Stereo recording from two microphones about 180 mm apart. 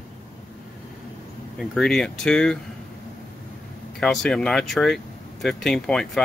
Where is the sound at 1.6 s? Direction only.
Centre (ahead or behind).